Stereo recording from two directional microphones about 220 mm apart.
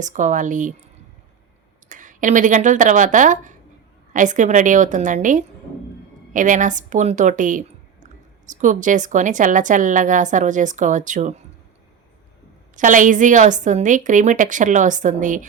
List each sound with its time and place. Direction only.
0.0 s speech: 35° right (ahead or behind)
1.9 s speech: 35° right (ahead or behind)
12.7 s speech: 35° right (ahead or behind)